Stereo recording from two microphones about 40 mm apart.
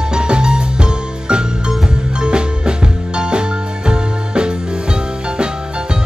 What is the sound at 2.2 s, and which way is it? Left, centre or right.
Music, right.